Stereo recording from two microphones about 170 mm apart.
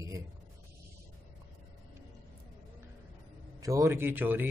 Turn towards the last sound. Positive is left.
turn(degrees=-10)  # may be behind; listen again after turning